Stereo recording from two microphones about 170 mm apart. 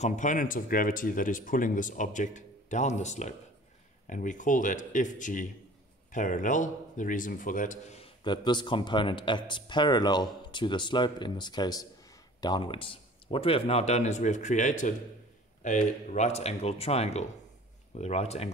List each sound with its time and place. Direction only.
0.0 s speech: 45° left (ahead or behind)
8.2 s speech: 25° left (ahead or behind)